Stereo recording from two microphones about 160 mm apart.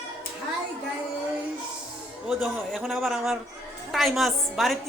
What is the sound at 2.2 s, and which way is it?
A man's voice, 5° right (ahead or behind).